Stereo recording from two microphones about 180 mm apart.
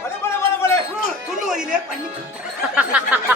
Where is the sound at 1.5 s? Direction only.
5° right (ahead or behind).